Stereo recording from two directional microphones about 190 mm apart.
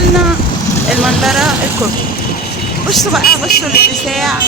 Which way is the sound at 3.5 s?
55° left (ahead or behind).